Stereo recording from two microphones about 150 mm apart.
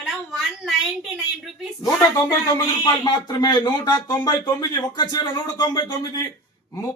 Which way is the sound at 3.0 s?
30° left (ahead or behind).